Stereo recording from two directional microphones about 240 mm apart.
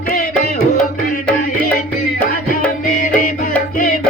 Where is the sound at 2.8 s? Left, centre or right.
Left.